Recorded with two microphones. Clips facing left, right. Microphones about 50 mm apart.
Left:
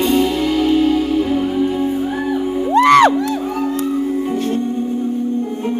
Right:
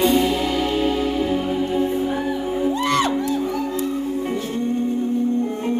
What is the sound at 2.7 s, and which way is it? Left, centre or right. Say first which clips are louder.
Music: left 15 dB; left.